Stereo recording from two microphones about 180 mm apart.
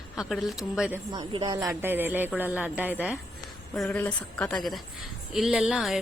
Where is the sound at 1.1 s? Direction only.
25° right (ahead or behind).